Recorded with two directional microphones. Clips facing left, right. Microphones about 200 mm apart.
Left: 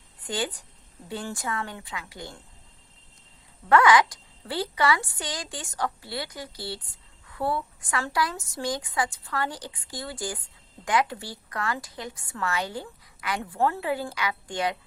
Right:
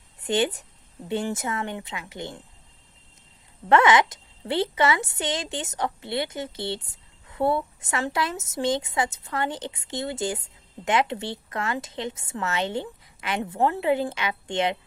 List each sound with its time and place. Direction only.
0.2 s a woman's voice: 25° right (ahead or behind)
3.7 s a woman's voice: 25° right (ahead or behind)